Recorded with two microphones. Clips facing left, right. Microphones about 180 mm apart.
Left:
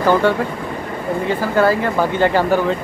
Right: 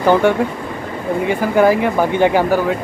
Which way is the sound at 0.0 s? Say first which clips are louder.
Right 2 dB; 15° right (ahead or behind).